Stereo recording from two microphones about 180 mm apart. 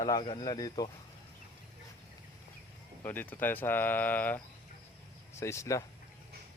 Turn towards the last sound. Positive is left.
turn(degrees=15)  # may be behind; listen again after turning